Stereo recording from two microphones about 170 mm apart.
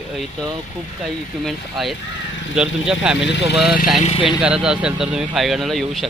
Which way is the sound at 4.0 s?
30° left (ahead or behind).